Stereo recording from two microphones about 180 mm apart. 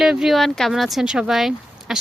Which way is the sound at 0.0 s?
Centre (ahead or behind).